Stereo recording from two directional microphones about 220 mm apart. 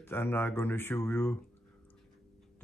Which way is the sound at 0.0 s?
10° left (ahead or behind).